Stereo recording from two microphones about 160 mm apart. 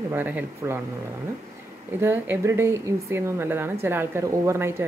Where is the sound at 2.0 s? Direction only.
15° right (ahead or behind).